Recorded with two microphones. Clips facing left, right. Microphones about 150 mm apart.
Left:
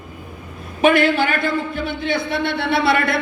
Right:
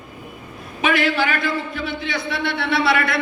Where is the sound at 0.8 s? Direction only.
55° left (ahead or behind).